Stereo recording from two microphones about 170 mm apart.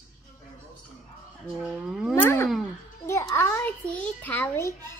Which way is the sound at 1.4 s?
5° right (ahead or behind).